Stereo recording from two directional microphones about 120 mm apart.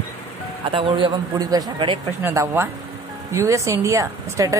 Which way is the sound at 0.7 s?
45° right (ahead or behind).